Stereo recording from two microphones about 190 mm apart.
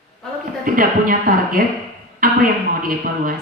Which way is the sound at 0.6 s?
45° right (ahead or behind).